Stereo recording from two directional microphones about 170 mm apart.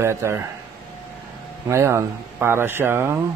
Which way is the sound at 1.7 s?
15° right (ahead or behind).